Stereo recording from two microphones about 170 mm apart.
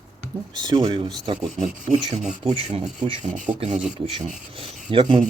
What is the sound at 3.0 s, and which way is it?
Speech, 40° right (ahead or behind).